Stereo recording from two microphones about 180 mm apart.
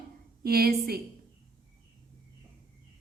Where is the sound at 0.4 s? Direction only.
60° right (ahead or behind).